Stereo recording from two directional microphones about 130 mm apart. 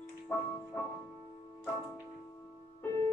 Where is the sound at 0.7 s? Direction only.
15° left (ahead or behind).